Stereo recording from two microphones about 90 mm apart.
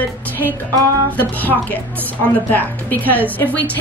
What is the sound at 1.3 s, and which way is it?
Speech, 20° left (ahead or behind).